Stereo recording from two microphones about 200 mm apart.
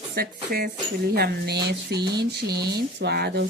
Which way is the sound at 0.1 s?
50° right (ahead or behind).